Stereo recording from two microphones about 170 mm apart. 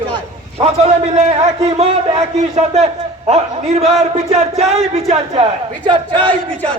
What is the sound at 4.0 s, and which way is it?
Speech, 40° right (ahead or behind).